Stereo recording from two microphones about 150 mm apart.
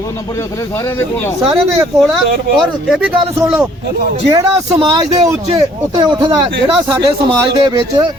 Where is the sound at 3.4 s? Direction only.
20° right (ahead or behind).